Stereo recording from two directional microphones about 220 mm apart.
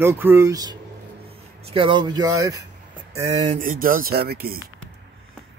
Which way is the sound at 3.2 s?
30° right (ahead or behind).